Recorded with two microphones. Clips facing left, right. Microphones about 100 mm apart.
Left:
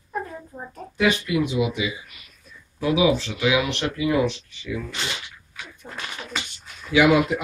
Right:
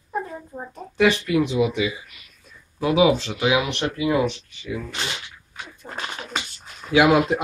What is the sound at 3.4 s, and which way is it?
Speech, 35° right (ahead or behind).